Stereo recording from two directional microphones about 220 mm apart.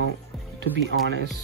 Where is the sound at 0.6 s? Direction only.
55° right (ahead or behind).